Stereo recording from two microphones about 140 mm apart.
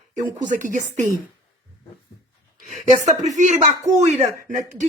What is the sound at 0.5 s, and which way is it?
Speech, 65° right (ahead or behind).